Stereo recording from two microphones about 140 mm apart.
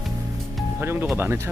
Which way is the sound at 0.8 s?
15° right (ahead or behind).